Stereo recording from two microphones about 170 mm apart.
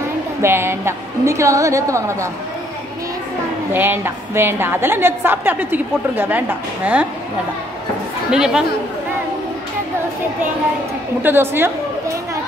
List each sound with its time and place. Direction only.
0.4 s a woman's voice: 15° right (ahead or behind)
3.7 s a woman's voice: 10° right (ahead or behind)
8.3 s speech: 5° right (ahead or behind)
11.2 s a woman's voice: 15° right (ahead or behind)